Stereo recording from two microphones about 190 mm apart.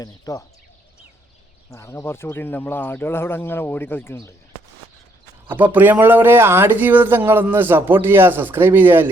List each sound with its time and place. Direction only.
0.0 s speech: 15° left (ahead or behind)
1.7 s speech: 15° left (ahead or behind)
5.5 s speech: 10° right (ahead or behind)